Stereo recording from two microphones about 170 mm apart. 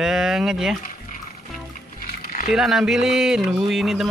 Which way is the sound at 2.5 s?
Centre (ahead or behind).